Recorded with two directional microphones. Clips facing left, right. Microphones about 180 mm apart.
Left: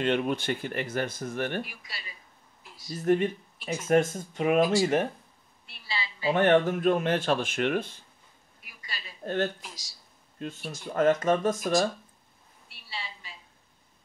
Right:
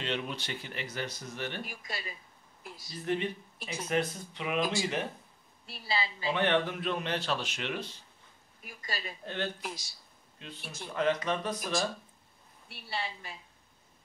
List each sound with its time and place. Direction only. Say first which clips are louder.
0.0 s speech: left 9 dB; 50° left (ahead or behind)
1.6 s speech: left 3 dB; 45° right (ahead or behind)
2.9 s speech: left 8 dB; 45° left (ahead or behind)
5.9 s a woman's voice: right 3 dB; 40° right (ahead or behind)
6.2 s speech: left 8 dB; 45° left (ahead or behind)
8.6 s a woman's voice: right 5 dB; 45° right (ahead or behind)
9.2 s speech: left 9 dB; 45° left (ahead or behind)
9.6 s speech: right 7 dB; 55° right (ahead or behind)
10.4 s speech: left 8 dB; 45° left (ahead or behind)
12.6 s a sound: right 4 dB; 60° right (ahead or behind)